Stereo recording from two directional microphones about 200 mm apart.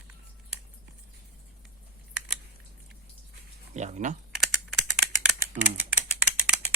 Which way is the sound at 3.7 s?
35° right (ahead or behind).